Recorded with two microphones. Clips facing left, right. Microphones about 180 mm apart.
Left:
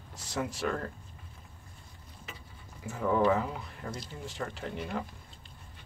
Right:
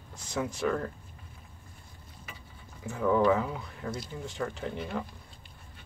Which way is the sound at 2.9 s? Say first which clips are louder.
Right 2 dB; 5° left (ahead or behind).